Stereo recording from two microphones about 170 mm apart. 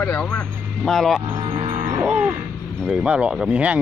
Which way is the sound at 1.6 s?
40° right (ahead or behind).